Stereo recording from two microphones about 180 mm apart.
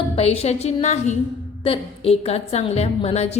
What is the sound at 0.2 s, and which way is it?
Speech, 35° left (ahead or behind).